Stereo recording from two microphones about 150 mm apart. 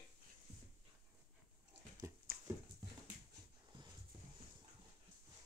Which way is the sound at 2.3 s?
80° right.